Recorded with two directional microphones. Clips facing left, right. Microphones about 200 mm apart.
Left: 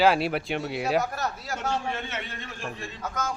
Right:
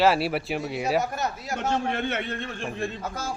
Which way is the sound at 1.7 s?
60° right (ahead or behind).